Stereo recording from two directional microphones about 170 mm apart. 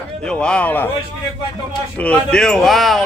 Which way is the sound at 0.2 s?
5° left (ahead or behind).